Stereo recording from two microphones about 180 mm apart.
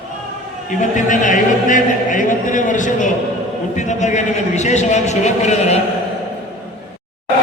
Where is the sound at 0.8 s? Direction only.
45° left (ahead or behind).